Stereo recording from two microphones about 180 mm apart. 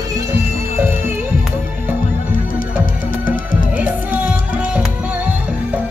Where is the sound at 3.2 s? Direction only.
50° left (ahead or behind).